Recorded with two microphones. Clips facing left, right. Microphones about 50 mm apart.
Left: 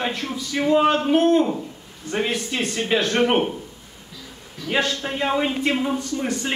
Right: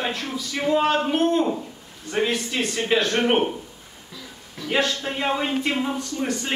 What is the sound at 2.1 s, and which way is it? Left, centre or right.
Speech, centre.